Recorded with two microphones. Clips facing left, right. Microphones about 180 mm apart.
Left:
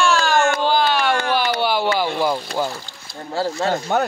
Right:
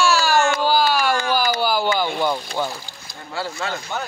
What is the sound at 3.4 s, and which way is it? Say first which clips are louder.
Speech: left 6 dB; 40° left (ahead or behind).